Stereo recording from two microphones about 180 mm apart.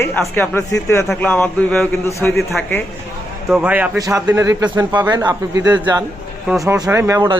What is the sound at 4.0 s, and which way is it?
Speech, 20° right (ahead or behind).